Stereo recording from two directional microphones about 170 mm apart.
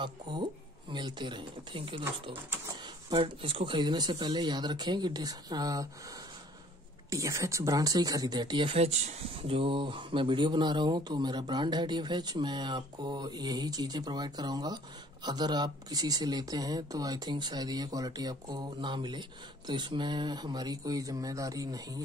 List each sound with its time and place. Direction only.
0.0 s speech: 25° right (ahead or behind)
7.1 s speech: 20° right (ahead or behind)